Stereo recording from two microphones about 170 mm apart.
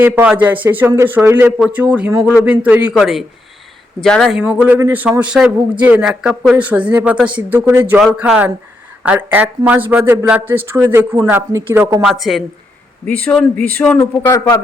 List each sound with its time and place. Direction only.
0.0 s a man's voice: 10° right (ahead or behind)
12.0 s speech: centre (ahead or behind); by 14.6 s 20° left (ahead or behind)